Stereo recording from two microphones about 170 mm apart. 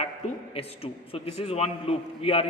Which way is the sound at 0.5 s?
35° left (ahead or behind).